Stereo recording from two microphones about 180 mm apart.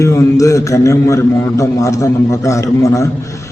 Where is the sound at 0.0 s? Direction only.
15° left (ahead or behind).